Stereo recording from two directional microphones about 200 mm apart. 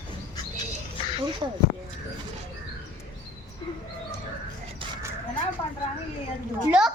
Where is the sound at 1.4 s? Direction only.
25° right (ahead or behind).